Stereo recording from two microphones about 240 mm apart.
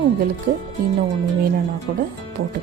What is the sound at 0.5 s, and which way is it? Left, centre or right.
Speech, right.